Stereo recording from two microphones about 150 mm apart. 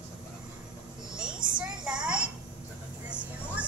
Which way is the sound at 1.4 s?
65° right (ahead or behind).